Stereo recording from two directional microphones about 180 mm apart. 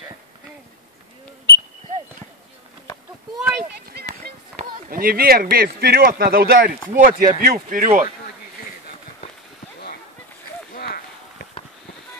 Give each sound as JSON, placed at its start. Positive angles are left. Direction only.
{"t": 3.3, "sound": "speech", "side_deg": -5}
{"t": 4.9, "sound": "speech", "side_deg": -55}
{"t": 10.7, "sound": "a sound", "side_deg": 60}